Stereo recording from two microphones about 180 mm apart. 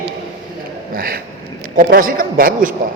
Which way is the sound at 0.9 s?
55° right (ahead or behind).